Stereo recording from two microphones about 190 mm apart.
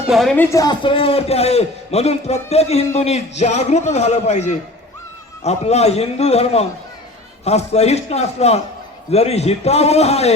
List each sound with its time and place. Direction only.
0.1 s speech: centre (ahead or behind)
0.5 s a man's voice: 20° left (ahead or behind)